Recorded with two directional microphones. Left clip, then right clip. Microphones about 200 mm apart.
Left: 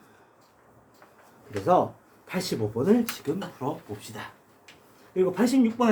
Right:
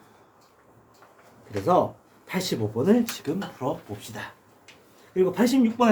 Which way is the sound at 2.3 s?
15° right (ahead or behind).